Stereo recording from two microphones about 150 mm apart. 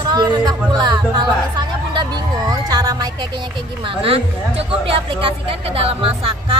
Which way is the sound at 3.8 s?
35° right (ahead or behind).